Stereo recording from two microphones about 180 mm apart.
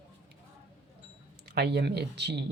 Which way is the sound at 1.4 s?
65° right (ahead or behind).